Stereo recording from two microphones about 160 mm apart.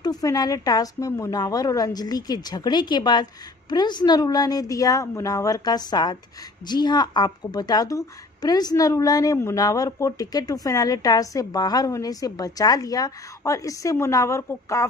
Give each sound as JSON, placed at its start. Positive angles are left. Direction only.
{"t": 0.0, "sound": "a woman's voice", "side_deg": 25}